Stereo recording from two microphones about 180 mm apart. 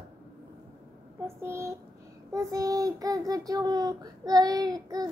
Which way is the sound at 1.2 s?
15° right (ahead or behind).